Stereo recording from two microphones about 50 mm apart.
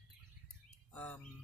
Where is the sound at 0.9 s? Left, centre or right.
Left.